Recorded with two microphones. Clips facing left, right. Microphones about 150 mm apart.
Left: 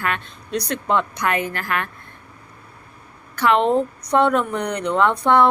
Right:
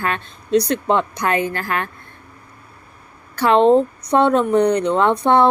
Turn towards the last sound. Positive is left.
turn(degrees=-25)  # may be behind; listen again after turning